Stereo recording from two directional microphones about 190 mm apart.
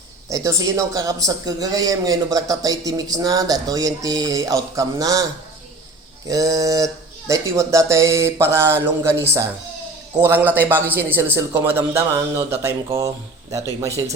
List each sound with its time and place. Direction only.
0.3 s a man's voice: 15° right (ahead or behind)
6.2 s speech: 20° right (ahead or behind)